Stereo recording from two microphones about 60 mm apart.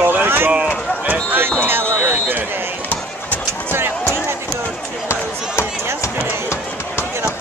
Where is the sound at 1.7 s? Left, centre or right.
Right.